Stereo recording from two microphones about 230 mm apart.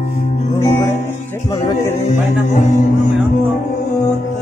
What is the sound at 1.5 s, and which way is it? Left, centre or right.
Music, centre.